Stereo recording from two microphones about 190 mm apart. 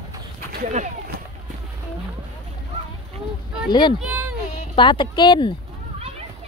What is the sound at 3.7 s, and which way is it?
Speech, 25° left (ahead or behind).